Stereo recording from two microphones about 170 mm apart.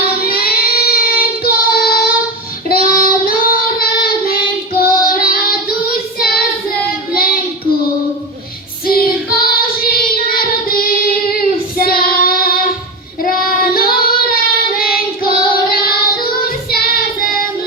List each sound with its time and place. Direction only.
0.0 s child singing: 65° left (ahead or behind)
9.0 s child singing: 60° left (ahead or behind)